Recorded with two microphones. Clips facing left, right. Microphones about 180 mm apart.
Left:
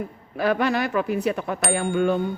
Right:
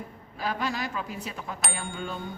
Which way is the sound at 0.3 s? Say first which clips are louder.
Left 9 dB; 65° left (ahead or behind).